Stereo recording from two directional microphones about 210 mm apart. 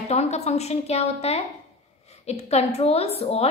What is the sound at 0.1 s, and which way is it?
A woman's voice, 30° left (ahead or behind).